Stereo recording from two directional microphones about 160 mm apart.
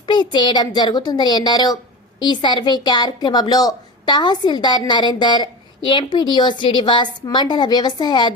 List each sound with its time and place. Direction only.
0.1 s a woman's voice: 25° left (ahead or behind)